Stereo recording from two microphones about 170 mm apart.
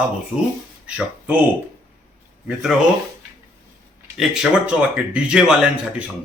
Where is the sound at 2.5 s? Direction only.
Centre (ahead or behind).